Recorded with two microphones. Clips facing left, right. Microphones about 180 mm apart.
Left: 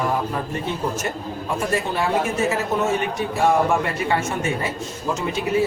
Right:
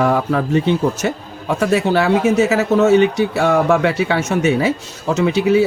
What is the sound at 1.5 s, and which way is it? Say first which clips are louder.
Speech: right 9 dB; 75° right (ahead or behind).